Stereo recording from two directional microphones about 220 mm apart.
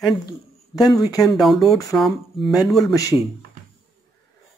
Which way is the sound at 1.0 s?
15° left (ahead or behind).